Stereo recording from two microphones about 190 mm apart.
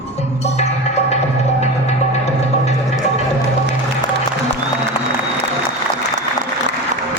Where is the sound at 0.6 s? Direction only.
35° left (ahead or behind).